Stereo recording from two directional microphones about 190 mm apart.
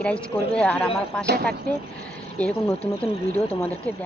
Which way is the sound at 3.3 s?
30° left (ahead or behind).